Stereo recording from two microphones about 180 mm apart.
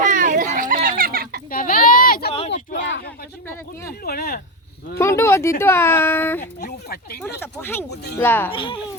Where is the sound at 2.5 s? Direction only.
85° left.